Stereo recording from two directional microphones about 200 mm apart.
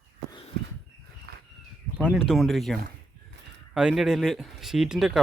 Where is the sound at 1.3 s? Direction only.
50° right (ahead or behind).